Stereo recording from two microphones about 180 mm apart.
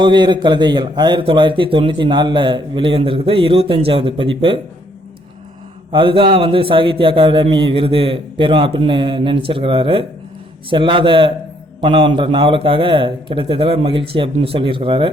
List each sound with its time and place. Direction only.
0.0 s speech: 25° right (ahead or behind)
5.9 s speech: 30° right (ahead or behind)